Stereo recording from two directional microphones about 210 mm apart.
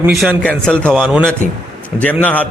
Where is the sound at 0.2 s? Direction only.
5° left (ahead or behind).